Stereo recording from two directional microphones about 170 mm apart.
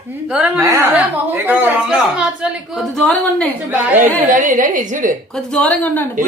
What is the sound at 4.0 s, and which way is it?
Mantra, 50° right (ahead or behind).